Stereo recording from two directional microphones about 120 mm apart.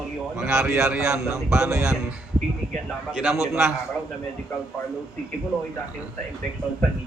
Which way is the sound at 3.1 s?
5° right (ahead or behind).